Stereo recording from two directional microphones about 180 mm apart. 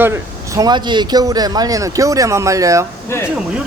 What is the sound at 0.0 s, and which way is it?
Speech, 15° right (ahead or behind).